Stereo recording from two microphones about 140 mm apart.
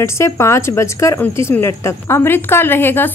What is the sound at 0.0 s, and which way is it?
A woman's voice, 20° left (ahead or behind).